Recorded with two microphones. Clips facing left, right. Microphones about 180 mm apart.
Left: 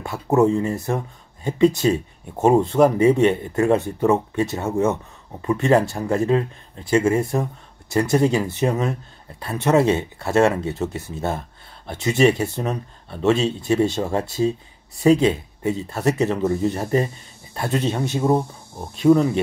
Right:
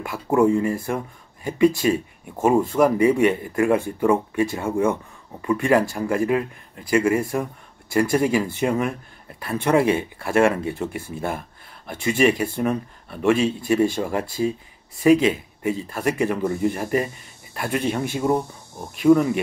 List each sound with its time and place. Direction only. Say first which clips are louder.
0.0 s speech: left 1 dB; 25° left (ahead or behind)